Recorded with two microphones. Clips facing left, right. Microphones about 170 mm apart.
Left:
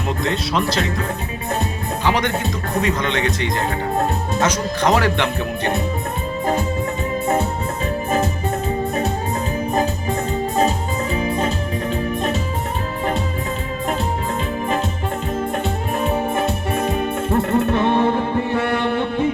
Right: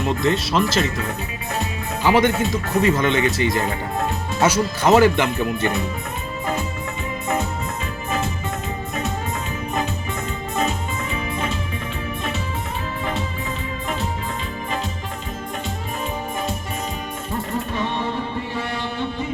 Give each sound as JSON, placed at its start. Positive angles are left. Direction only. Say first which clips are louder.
{"t": 0.2, "sound": "speech", "louder": "even", "side_deg": 0}
{"t": 2.0, "sound": "speech", "louder": "right 3 dB", "side_deg": -5}
{"t": 9.7, "sound": "music", "louder": "left 4 dB", "side_deg": 35}
{"t": 15.6, "sound": "music", "louder": "left 7 dB", "side_deg": 60}